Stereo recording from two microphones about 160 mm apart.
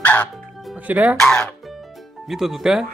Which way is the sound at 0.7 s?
10° right (ahead or behind).